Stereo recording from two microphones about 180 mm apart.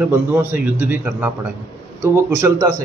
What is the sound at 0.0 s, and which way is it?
A man's voice, 10° right (ahead or behind).